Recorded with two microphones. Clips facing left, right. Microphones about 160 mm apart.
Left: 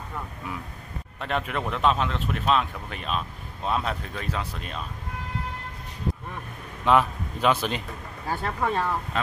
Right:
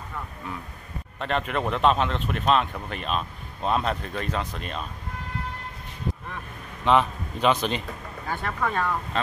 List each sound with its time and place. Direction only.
1.2 s speech: 5° left (ahead or behind)
6.8 s a man's voice: 5° left (ahead or behind)
8.3 s speech: 30° left (ahead or behind)
9.1 s speech: 10° left (ahead or behind)